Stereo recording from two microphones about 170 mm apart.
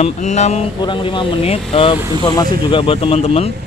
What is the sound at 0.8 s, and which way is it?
Speech, 30° left (ahead or behind).